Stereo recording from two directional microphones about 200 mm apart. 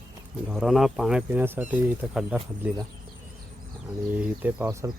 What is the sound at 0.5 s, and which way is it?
Speech, centre (ahead or behind).